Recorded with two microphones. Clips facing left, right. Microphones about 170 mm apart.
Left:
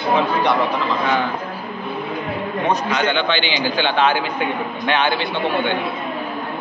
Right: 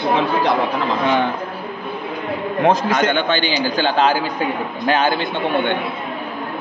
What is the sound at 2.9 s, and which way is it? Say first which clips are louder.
A man's voice: right 2 dB; 45° right (ahead or behind).